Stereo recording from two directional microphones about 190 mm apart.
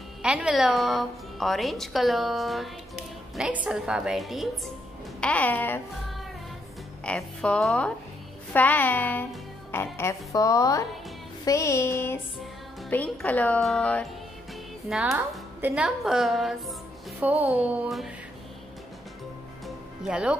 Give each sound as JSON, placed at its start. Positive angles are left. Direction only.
{"t": 0.2, "sound": "a woman's voice", "side_deg": -5}
{"t": 20.0, "sound": "a woman's voice", "side_deg": -5}